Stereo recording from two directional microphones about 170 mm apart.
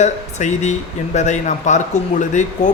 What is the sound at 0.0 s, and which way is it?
A man's voice, 45° left (ahead or behind).